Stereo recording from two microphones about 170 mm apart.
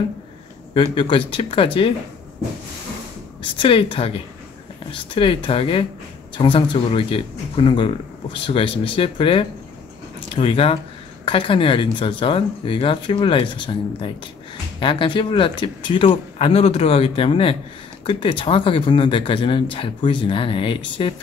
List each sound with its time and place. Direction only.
0.9 s speech: 30° left (ahead or behind)
3.5 s speech: 30° left (ahead or behind)